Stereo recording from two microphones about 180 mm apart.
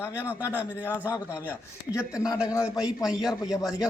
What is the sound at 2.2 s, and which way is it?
A man's voice, 5° right (ahead or behind).